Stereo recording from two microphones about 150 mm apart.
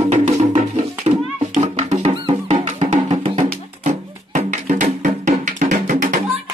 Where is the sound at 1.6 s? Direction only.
50° right (ahead or behind).